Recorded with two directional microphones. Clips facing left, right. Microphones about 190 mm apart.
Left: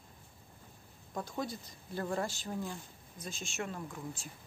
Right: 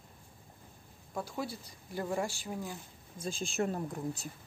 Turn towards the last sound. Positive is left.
turn(degrees=-40)  # may be behind; listen again after turning